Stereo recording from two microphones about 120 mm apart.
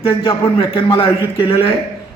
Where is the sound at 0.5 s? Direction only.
45° left (ahead or behind).